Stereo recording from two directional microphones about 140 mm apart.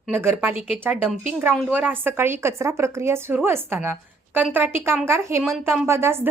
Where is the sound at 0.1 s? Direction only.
15° right (ahead or behind).